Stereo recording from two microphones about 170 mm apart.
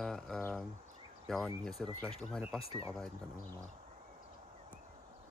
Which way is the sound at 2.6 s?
35° left (ahead or behind).